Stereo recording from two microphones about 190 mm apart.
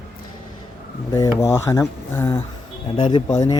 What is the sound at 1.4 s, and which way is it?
A man's voice, 15° left (ahead or behind).